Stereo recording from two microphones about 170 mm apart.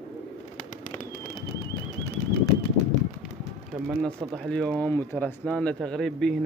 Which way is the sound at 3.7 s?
15° right (ahead or behind).